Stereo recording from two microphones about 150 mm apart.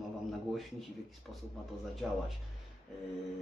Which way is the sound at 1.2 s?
5° left (ahead or behind).